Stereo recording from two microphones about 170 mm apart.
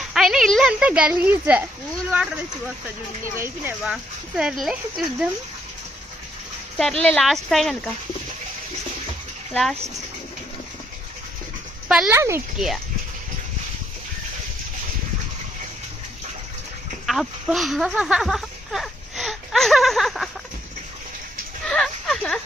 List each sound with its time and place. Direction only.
0.0 s speech: centre (ahead or behind)
3.3 s speech: 15° right (ahead or behind)
6.7 s speech: 5° left (ahead or behind)
9.5 s speech: centre (ahead or behind)
11.9 s speech: 5° right (ahead or behind)
12.1 s speech: 15° right (ahead or behind)
12.5 s speech: centre (ahead or behind)
17.1 s speech: centre (ahead or behind)
21.6 s a sound: 5° left (ahead or behind)